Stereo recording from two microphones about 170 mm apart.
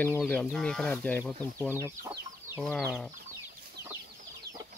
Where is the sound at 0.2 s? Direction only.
5° left (ahead or behind).